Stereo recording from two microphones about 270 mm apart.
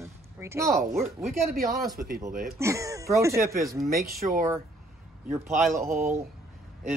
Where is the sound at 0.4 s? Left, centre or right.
Centre.